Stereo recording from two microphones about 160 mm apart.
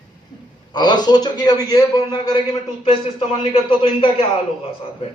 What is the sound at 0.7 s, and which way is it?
A man's voice, 25° left (ahead or behind).